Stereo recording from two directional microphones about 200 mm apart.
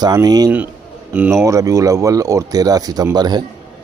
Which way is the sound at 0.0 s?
20° right (ahead or behind).